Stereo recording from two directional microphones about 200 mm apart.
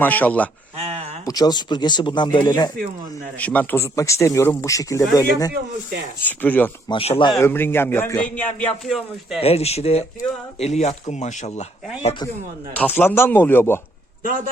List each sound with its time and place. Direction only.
0.0 s a man's voice: 10° left (ahead or behind)
1.2 s speech: 20° left (ahead or behind)
3.3 s a man's voice: 10° left (ahead or behind)
9.4 s speech: 30° left (ahead or behind)
12.7 s a man's voice: 10° left (ahead or behind)